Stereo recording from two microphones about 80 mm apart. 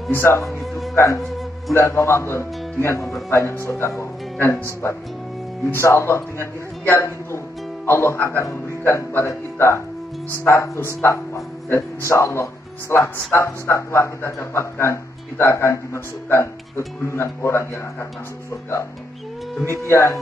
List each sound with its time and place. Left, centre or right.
0.1 s a man's voice: left
5.7 s a man's voice: left
19.9 s a man's voice: left